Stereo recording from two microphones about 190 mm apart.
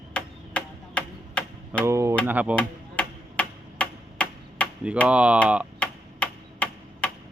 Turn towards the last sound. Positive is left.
turn(degrees=5)  # may be behind; listen again after turning